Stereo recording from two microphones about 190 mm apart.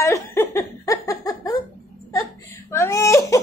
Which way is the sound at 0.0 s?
15° left (ahead or behind).